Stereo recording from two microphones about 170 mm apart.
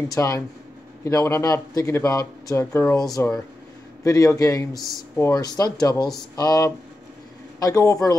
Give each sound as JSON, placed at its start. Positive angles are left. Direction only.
{"t": 0.1, "sound": "a man's voice", "side_deg": 20}